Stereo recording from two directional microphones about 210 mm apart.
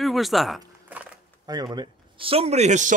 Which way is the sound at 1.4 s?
20° right (ahead or behind).